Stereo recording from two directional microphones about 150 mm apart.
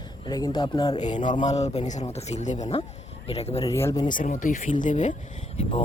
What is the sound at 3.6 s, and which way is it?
Speech, 20° left (ahead or behind).